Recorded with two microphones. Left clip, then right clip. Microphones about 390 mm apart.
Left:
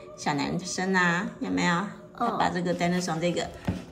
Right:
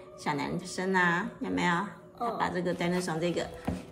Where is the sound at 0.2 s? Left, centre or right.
Centre.